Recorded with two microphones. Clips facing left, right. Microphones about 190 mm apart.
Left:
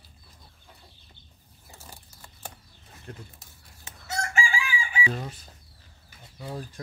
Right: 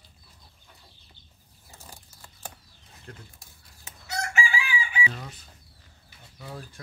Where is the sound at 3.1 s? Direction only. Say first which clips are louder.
Left 3 dB; 10° left (ahead or behind).